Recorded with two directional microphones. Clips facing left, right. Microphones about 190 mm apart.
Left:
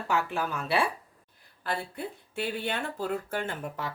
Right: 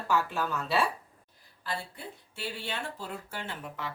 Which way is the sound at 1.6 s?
55° left (ahead or behind).